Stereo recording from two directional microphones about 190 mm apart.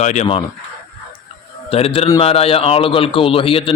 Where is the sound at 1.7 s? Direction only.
30° left (ahead or behind).